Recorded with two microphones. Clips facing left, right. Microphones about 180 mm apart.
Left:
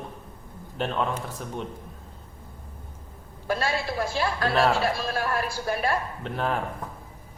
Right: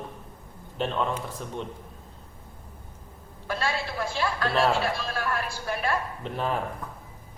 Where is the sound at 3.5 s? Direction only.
40° left (ahead or behind).